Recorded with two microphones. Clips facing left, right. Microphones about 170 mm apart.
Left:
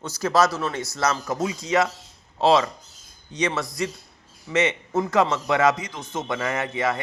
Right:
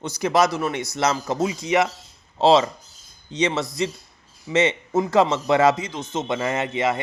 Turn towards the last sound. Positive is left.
turn(degrees=-20)  # may be behind; listen again after turning